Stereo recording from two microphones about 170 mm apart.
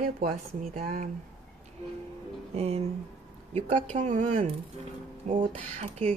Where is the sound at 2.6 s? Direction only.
40° right (ahead or behind).